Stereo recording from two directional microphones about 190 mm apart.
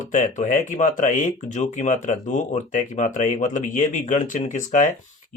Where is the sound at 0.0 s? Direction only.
40° left (ahead or behind).